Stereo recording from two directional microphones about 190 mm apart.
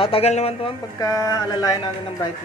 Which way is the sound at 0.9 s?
20° left (ahead or behind).